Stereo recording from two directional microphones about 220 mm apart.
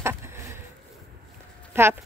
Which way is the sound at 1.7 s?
10° right (ahead or behind).